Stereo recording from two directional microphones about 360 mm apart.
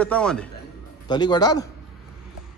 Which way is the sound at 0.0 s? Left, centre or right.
Centre.